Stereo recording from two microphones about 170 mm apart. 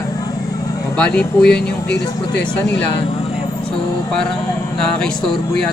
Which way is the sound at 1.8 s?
80° left.